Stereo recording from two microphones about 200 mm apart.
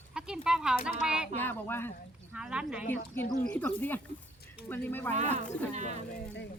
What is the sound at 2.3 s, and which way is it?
Speech, 5° right (ahead or behind).